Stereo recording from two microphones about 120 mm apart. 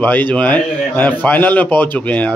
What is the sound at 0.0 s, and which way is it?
Speech, 15° left (ahead or behind).